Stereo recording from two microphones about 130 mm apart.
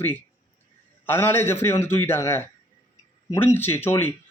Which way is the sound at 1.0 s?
15° left (ahead or behind).